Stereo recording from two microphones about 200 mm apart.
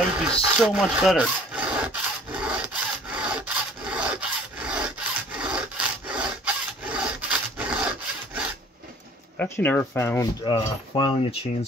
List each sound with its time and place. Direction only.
0.1 s rub: centre (ahead or behind)
9.4 s speech: 10° left (ahead or behind)
10.4 s speech: 20° left (ahead or behind)